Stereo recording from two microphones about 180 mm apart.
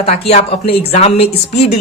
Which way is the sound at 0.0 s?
35° left (ahead or behind).